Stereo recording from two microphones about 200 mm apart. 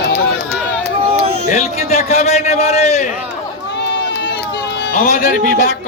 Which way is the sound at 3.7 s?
55° left (ahead or behind).